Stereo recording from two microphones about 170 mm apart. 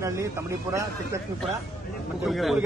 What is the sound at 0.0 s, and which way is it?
Speech, 15° right (ahead or behind).